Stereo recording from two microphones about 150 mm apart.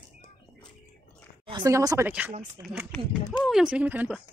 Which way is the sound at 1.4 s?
30° right (ahead or behind).